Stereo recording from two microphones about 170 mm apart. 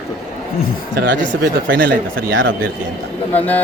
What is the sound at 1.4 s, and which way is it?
Speech, 60° right (ahead or behind).